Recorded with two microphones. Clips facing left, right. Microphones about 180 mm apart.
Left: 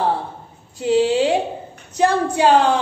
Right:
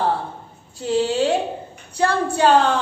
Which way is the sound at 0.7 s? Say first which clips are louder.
Left 3 dB; 15° left (ahead or behind).